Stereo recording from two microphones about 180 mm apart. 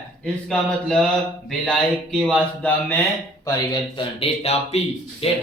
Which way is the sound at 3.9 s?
30° left (ahead or behind).